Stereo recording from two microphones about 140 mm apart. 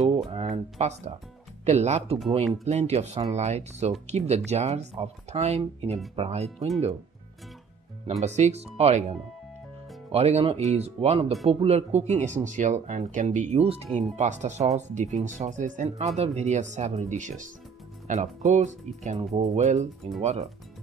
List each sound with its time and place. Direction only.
0.0 s speech: 45° right (ahead or behind)
8.2 s speech: 55° right (ahead or behind)
10.1 s speech: 45° right (ahead or behind)
13.9 s speech: 60° right (ahead or behind)